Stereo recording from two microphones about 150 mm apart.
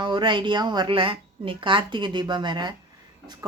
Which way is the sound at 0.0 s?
30° right (ahead or behind).